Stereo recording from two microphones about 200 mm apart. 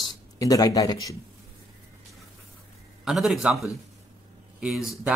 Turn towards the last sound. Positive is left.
turn(degrees=0)  # may be behind; listen again after turning